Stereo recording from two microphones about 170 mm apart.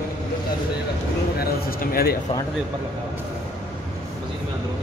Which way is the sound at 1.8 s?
60° left (ahead or behind).